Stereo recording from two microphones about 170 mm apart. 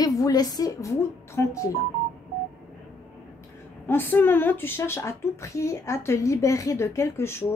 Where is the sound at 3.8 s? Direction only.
10° left (ahead or behind).